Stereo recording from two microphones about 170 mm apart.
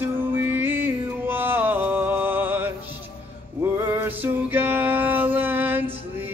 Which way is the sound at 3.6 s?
15° right (ahead or behind).